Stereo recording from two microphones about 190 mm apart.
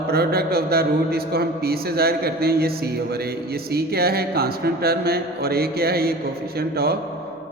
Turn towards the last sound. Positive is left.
turn(degrees=-55)  # may be behind; listen again after turning